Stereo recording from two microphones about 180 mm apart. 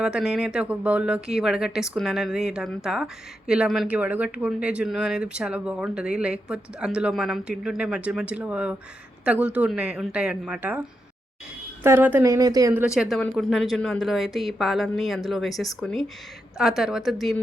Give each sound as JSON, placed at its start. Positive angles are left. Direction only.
{"t": 0.0, "sound": "a woman's voice", "side_deg": -5}
{"t": 11.8, "sound": "speech", "side_deg": -10}
{"t": 12.7, "sound": "speech", "side_deg": -5}